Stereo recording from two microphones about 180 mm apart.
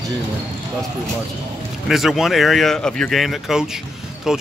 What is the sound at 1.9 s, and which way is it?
Speech, centre (ahead or behind).